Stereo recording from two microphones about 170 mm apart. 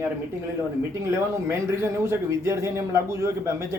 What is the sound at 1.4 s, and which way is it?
A man's voice, 15° right (ahead or behind).